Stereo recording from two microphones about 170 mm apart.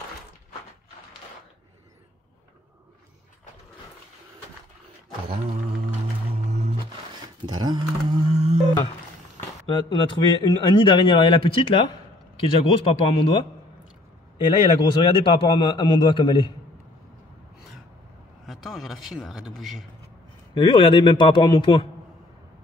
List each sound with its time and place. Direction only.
6.4 s music: 40° right (ahead or behind)
7.4 s a sound: 25° right (ahead or behind)
8.3 s a sound: 40° right (ahead or behind)
9.7 s speech: 25° left (ahead or behind)
15.0 s speech: 30° left (ahead or behind)
18.4 s a man's voice: centre (ahead or behind)
20.5 s speech: 30° left (ahead or behind)